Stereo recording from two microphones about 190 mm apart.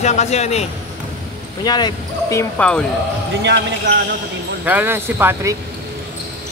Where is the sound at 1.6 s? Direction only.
20° left (ahead or behind); by 2.8 s 5° left (ahead or behind).